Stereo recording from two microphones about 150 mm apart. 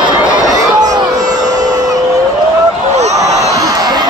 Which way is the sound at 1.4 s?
25° right (ahead or behind).